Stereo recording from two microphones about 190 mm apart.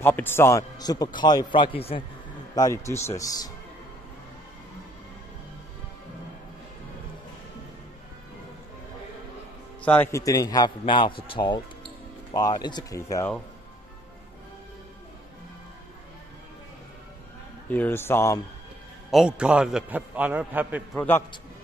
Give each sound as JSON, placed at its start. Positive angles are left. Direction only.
{"t": 0.0, "sound": "a man's voice", "side_deg": 10}
{"t": 2.5, "sound": "a man's voice", "side_deg": 15}
{"t": 9.8, "sound": "a man's voice", "side_deg": 15}
{"t": 17.6, "sound": "a man's voice", "side_deg": 10}
{"t": 19.0, "sound": "a man's voice", "side_deg": -5}
{"t": 20.9, "sound": "a man's voice", "side_deg": 10}